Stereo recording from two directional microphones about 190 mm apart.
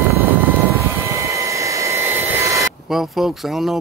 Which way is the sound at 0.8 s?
15° right (ahead or behind).